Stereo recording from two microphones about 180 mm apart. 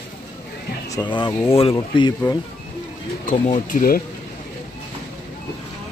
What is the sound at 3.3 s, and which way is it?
Speech, 45° left (ahead or behind).